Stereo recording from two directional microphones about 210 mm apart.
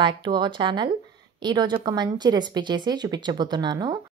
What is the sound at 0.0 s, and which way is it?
A woman's voice, 20° right (ahead or behind).